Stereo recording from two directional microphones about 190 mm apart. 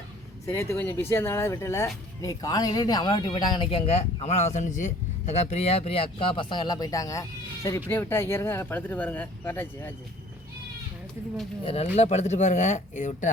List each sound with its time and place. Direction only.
0.4 s speech: 15° left (ahead or behind)
11.6 s speech: 30° left (ahead or behind)